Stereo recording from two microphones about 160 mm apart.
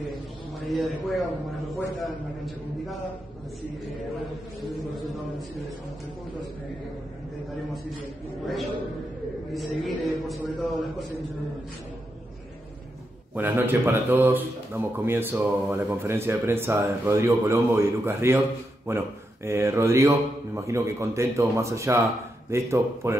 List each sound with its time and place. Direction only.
0.6 s a man's voice: centre (ahead or behind)
9.5 s a man's voice: centre (ahead or behind)
13.3 s speech: 10° right (ahead or behind)